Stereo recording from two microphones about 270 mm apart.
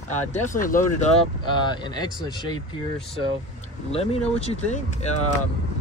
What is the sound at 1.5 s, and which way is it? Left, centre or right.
Speech, centre.